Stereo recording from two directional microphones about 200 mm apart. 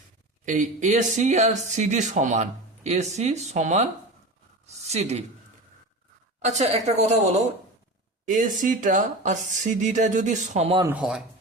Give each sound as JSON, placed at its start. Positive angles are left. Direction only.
{"t": 0.4, "sound": "speech", "side_deg": -40}
{"t": 6.4, "sound": "speech", "side_deg": -35}
{"t": 10.8, "sound": "speech", "side_deg": -5}